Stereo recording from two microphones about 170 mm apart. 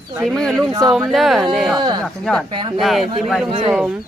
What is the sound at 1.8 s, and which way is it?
Speech, 25° right (ahead or behind).